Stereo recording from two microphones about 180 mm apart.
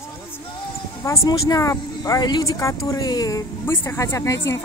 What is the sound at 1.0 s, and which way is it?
Speech, 15° left (ahead or behind).